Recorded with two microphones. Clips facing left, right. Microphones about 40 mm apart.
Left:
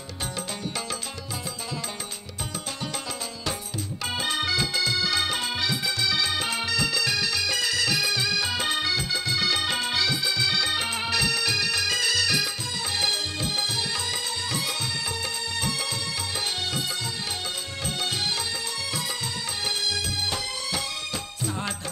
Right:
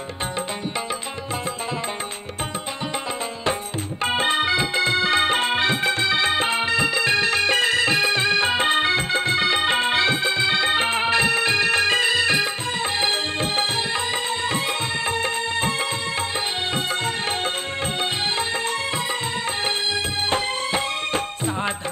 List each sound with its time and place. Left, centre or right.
4.0 s music: right
15.0 s music: right
20.2 s music: right